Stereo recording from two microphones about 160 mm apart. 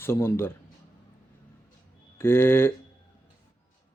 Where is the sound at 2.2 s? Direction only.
15° left (ahead or behind).